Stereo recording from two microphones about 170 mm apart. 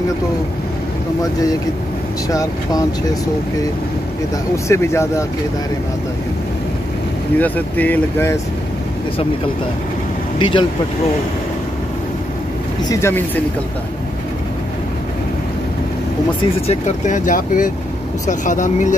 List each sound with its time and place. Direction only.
2.2 s speech: 20° left (ahead or behind)
4.6 s speech: 15° left (ahead or behind)
7.3 s speech: 10° left (ahead or behind)
10.4 s speech: 25° left (ahead or behind)
12.8 s speech: 15° left (ahead or behind)
16.6 s speech: 45° left (ahead or behind)